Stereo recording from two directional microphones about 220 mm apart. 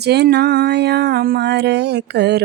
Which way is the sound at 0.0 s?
50° right (ahead or behind).